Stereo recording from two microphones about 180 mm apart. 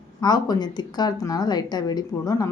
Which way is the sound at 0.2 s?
20° left (ahead or behind).